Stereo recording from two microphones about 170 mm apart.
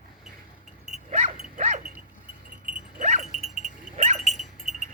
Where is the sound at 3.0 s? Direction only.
45° right (ahead or behind).